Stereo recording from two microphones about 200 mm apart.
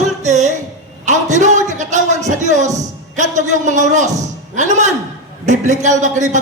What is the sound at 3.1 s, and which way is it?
A man's voice, 35° right (ahead or behind).